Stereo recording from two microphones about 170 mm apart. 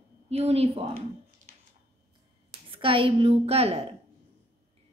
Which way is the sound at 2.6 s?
30° right (ahead or behind).